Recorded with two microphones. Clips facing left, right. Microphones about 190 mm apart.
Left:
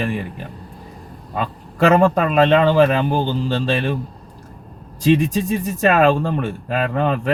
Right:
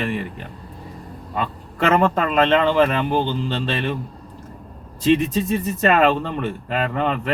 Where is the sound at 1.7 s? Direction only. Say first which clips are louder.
Left 4 dB; 10° left (ahead or behind).